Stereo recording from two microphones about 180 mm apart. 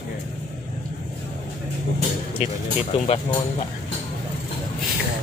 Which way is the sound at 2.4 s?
35° left (ahead or behind).